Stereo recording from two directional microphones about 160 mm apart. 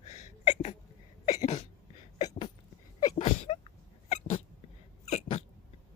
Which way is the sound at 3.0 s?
35° left (ahead or behind).